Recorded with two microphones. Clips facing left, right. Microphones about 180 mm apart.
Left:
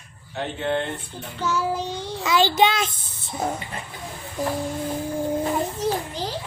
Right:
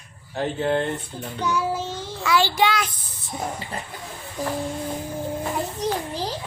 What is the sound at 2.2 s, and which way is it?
Child singing, 20° left (ahead or behind).